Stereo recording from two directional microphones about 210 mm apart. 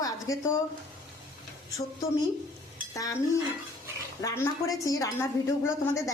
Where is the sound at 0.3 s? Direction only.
15° left (ahead or behind).